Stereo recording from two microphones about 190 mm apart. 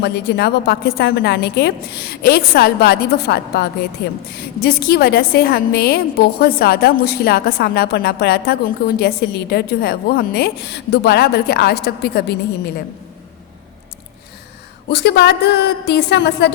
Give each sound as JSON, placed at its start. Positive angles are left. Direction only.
{"t": 0.0, "sound": "a woman's voice", "side_deg": 60}
{"t": 14.8, "sound": "a woman's voice", "side_deg": 60}